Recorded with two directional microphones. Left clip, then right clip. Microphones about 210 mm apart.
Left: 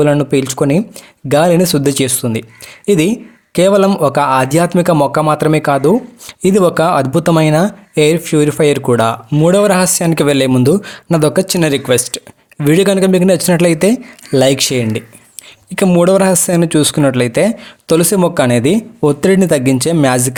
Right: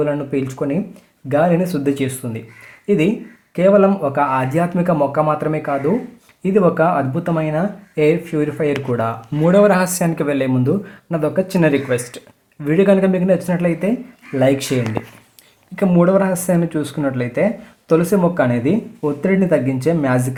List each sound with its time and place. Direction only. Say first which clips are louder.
0.0 s speech: left 8 dB; 45° left (ahead or behind)